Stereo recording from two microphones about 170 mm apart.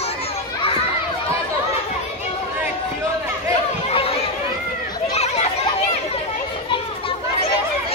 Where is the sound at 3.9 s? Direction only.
35° left (ahead or behind).